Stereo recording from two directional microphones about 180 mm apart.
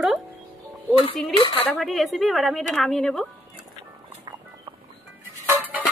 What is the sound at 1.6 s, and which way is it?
Speech, centre (ahead or behind).